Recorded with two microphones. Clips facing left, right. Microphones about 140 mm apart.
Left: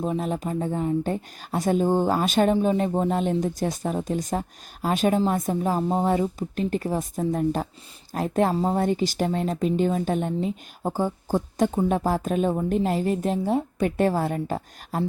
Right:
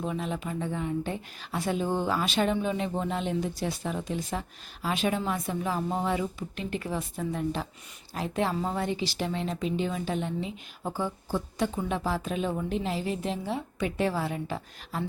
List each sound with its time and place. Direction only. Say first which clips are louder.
0.0 s speech: left 6 dB; 40° left (ahead or behind)